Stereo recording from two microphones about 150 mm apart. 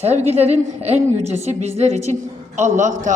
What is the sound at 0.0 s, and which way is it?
A woman's voice, 45° right (ahead or behind).